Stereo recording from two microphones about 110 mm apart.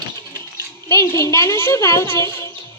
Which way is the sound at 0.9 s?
25° left (ahead or behind).